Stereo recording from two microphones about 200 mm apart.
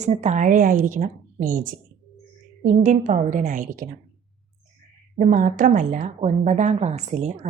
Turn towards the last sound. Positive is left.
turn(degrees=-35)  # may be behind; listen again after turning